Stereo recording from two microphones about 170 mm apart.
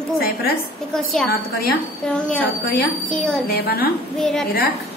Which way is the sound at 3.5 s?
65° left (ahead or behind).